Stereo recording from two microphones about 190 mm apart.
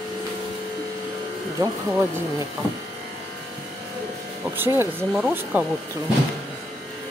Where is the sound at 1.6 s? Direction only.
15° right (ahead or behind).